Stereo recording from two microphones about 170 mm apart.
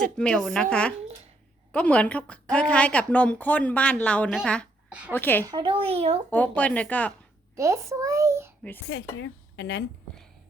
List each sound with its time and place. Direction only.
0.0 s a woman's voice: 5° left (ahead or behind)
5.5 s speech: 30° right (ahead or behind)
6.3 s speech: 10° left (ahead or behind)
7.5 s a child's voice: 20° right (ahead or behind)
8.9 s speech: 90° left